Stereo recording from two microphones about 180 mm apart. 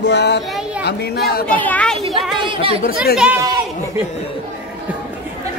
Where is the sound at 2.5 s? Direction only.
30° right (ahead or behind).